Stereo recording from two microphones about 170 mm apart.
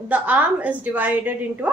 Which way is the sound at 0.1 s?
10° right (ahead or behind).